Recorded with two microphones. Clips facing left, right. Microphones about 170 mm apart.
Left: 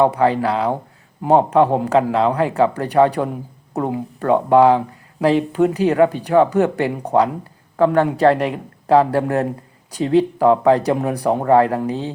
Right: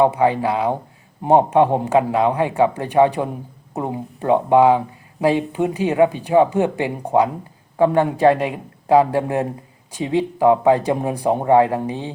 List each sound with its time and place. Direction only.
0.0 s speech: 15° right (ahead or behind)